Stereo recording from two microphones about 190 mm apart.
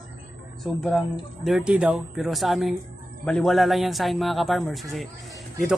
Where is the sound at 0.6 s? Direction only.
Centre (ahead or behind).